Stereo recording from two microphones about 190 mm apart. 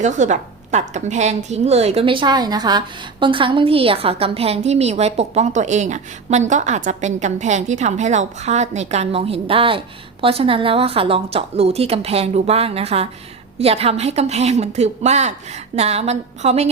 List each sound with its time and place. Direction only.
0.0 s a woman's voice: 40° right (ahead or behind)